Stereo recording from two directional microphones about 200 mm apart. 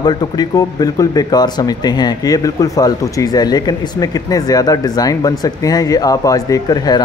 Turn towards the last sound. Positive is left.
turn(degrees=20)  # may be behind; listen again after turning